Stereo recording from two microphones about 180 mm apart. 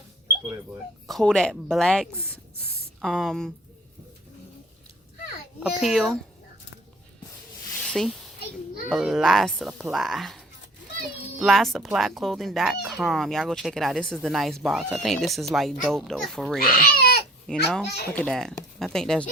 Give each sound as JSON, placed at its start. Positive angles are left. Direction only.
{"t": 1.0, "sound": "speech", "side_deg": 5}
{"t": 5.5, "sound": "speech", "side_deg": -5}
{"t": 7.9, "sound": "a sound", "side_deg": 0}
{"t": 8.9, "sound": "speech", "side_deg": -5}
{"t": 16.6, "sound": "speech", "side_deg": 55}
{"t": 17.4, "sound": "speech", "side_deg": 5}